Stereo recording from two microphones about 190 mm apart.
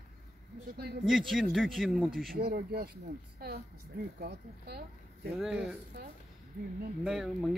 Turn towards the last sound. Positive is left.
turn(degrees=0)  # may be behind; listen again after turning